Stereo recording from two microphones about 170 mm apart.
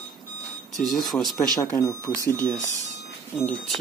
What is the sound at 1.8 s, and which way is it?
Speech, 20° left (ahead or behind).